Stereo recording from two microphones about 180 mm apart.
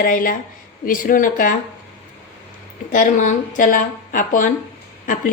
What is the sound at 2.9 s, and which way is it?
A woman's voice, 45° left (ahead or behind).